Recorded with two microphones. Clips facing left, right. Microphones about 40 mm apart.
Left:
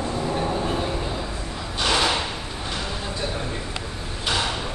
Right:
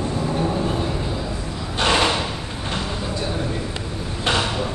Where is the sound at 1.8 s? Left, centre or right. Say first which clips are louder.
Right 3 dB; right.